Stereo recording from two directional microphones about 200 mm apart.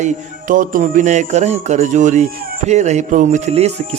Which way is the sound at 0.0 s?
40° right (ahead or behind).